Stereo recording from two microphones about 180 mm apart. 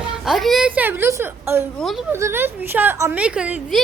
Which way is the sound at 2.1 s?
15° right (ahead or behind).